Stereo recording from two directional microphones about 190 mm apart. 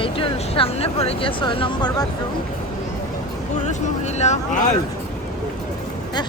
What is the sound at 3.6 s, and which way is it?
Speech, 35° left (ahead or behind).